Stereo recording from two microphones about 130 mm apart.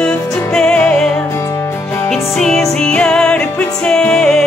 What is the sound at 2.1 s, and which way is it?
Music, 5° left (ahead or behind).